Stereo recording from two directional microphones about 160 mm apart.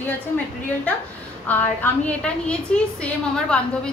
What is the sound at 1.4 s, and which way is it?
A woman's voice, 10° left (ahead or behind).